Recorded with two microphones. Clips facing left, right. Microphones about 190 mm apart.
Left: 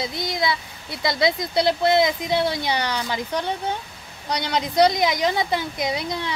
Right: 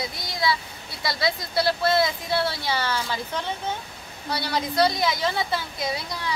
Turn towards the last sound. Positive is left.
turn(degrees=20)  # may be behind; listen again after turning